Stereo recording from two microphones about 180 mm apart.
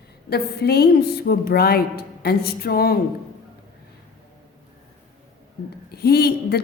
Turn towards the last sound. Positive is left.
turn(degrees=60)  # may be behind; listen again after turning